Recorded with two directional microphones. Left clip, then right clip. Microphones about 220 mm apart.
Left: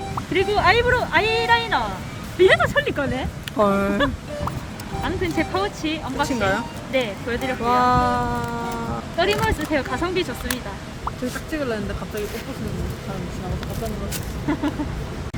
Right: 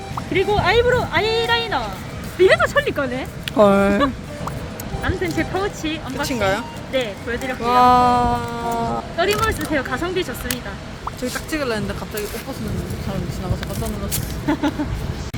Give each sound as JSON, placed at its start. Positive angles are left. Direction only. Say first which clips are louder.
{"t": 0.3, "sound": "speech", "louder": "right 1 dB", "side_deg": 0}
{"t": 2.4, "sound": "speech", "louder": "right 2 dB", "side_deg": -10}
{"t": 5.0, "sound": "speech", "louder": "right 1 dB", "side_deg": 10}
{"t": 6.2, "sound": "a sound", "louder": "right 2 dB", "side_deg": -20}
{"t": 6.9, "sound": "speech", "louder": "right 1 dB", "side_deg": 10}
{"t": 7.6, "sound": "a sound", "louder": "right 5 dB", "side_deg": -20}
{"t": 9.1, "sound": "speech", "louder": "even", "side_deg": 5}
{"t": 11.5, "sound": "a sound", "louder": "right 3 dB", "side_deg": -20}
{"t": 14.5, "sound": "speech", "louder": "right 4 dB", "side_deg": -40}